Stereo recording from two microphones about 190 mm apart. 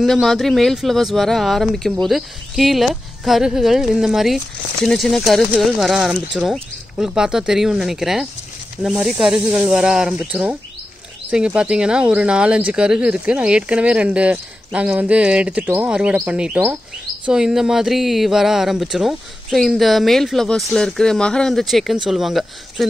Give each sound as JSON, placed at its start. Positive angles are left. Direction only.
{"t": 0.0, "sound": "speech", "side_deg": 0}